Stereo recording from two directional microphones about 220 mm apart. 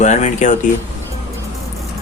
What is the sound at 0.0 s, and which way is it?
Speech, 30° left (ahead or behind).